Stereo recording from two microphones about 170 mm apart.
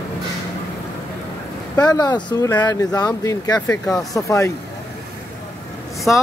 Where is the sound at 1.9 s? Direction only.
25° left (ahead or behind).